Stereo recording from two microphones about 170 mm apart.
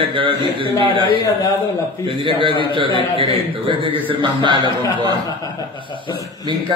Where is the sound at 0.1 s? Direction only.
30° right (ahead or behind).